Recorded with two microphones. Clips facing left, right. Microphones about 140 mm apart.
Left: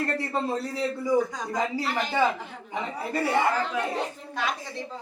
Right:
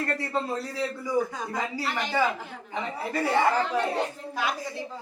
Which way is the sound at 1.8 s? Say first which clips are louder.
Left 2 dB; centre (ahead or behind).